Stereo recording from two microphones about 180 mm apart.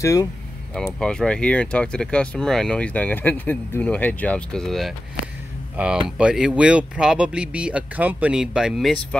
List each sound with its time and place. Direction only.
0.0 s speech: 20° left (ahead or behind)
0.9 s speech: 5° left (ahead or behind)